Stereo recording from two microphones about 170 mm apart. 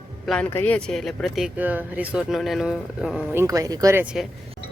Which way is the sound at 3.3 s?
15° right (ahead or behind).